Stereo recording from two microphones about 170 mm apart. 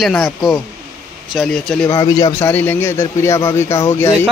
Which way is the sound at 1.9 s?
20° left (ahead or behind).